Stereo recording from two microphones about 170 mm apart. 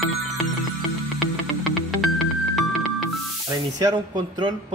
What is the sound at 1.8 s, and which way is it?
Music, centre (ahead or behind).